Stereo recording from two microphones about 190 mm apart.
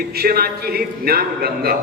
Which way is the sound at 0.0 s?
55° right (ahead or behind).